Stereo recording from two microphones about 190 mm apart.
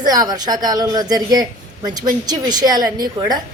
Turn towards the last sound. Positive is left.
turn(degrees=-20)  # may be behind; listen again after turning